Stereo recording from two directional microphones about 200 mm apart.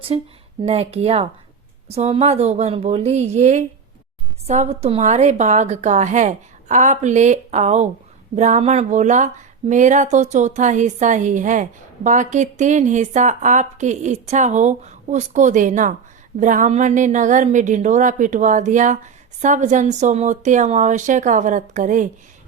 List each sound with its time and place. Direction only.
0.1 s speech: 30° right (ahead or behind)